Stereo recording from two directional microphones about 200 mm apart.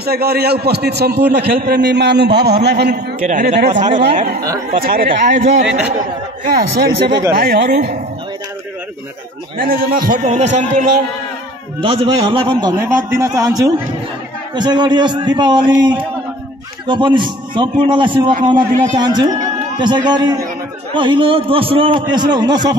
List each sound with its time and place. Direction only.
0.0 s a man's voice: 50° right (ahead or behind)
3.3 s a man's voice: 40° right (ahead or behind)
9.6 s a man's voice: 45° right (ahead or behind)
11.8 s a man's voice: 25° right (ahead or behind)
12.7 s a man's voice: 10° right (ahead or behind)